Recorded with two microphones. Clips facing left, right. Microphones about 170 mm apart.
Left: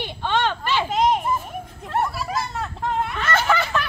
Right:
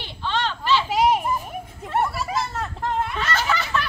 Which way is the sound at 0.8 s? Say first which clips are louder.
Left 2 dB; 5° right (ahead or behind).